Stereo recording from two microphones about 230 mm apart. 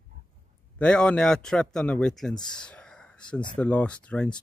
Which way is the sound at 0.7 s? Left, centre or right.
Centre.